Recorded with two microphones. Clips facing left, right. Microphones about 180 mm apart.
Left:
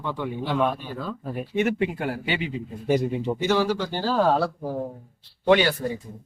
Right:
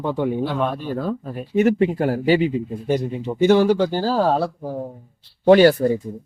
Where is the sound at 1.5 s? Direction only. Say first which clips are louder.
Right 7 dB; 40° right (ahead or behind).